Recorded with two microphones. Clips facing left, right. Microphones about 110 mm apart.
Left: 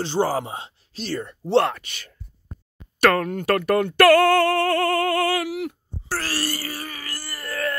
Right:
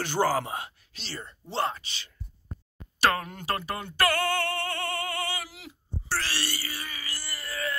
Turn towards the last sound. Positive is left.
turn(degrees=50)  # may be behind; listen again after turning